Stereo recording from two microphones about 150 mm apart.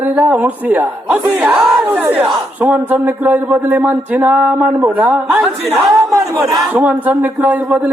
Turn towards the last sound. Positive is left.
turn(degrees=-10)  # may be behind; listen again after turning